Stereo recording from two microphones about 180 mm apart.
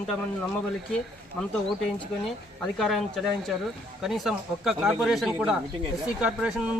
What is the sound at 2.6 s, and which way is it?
Speech, centre (ahead or behind).